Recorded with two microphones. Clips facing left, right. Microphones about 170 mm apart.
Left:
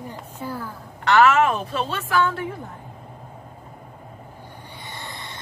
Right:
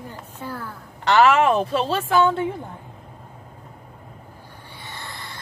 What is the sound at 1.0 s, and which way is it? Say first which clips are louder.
A woman's voice: right 1 dB; 30° right (ahead or behind).